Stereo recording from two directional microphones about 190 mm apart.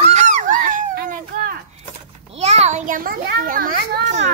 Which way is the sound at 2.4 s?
35° right (ahead or behind).